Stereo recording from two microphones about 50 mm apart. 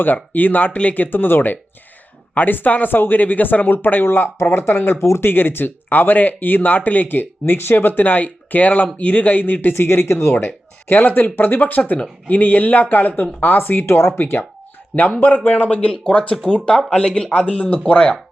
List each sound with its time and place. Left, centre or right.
0.0 s speech: left
4.9 s speech: left
5.3 s speech: left
10.8 s speech: left
11.8 s speech: left
13.8 s speech: left
14.9 s speech: left